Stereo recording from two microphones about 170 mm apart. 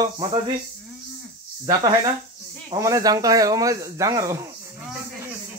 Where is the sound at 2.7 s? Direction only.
20° right (ahead or behind).